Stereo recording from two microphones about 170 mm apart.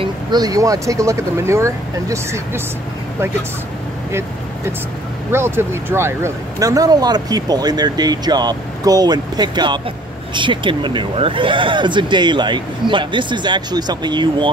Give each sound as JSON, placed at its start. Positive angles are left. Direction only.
{"t": 0.0, "sound": "speech", "side_deg": -25}
{"t": 5.3, "sound": "speech", "side_deg": -15}